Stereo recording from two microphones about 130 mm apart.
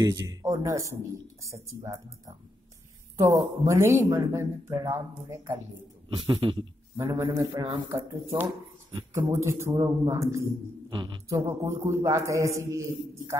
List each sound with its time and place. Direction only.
0.0 s speech: 25° right (ahead or behind)
6.0 s a man's voice: 40° right (ahead or behind); by 8.2 s 25° right (ahead or behind)
9.3 s speech: 20° right (ahead or behind)
10.9 s speech: 40° right (ahead or behind)
11.2 s speech: 25° right (ahead or behind)